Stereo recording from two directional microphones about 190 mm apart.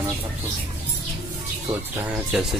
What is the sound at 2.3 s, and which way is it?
Speech, centre (ahead or behind).